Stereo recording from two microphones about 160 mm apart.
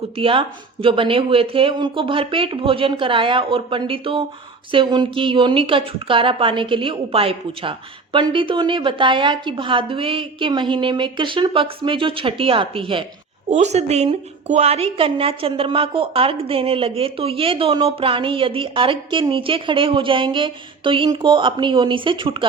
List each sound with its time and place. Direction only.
0.2 s a woman's voice: 35° right (ahead or behind)
13.5 s a woman's voice: 45° right (ahead or behind)